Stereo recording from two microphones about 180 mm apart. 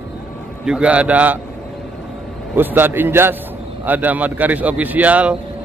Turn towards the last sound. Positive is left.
turn(degrees=-10)  # may be behind; listen again after turning